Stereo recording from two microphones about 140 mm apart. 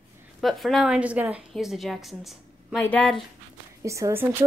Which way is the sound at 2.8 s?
10° left (ahead or behind).